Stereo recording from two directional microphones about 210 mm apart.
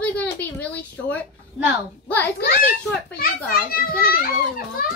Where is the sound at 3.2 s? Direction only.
45° left (ahead or behind).